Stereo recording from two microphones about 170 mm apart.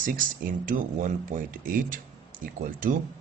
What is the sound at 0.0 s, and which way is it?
Speech, 55° right (ahead or behind).